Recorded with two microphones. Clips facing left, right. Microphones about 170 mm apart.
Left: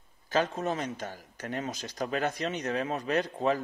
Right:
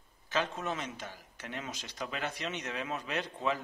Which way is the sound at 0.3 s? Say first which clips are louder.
Left 5 dB; 40° left (ahead or behind).